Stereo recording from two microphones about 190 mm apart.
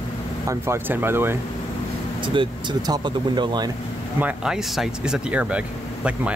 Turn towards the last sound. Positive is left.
turn(degrees=-5)  # may be behind; listen again after turning